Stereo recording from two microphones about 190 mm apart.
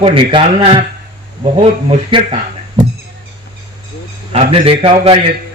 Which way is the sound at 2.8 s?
30° right (ahead or behind).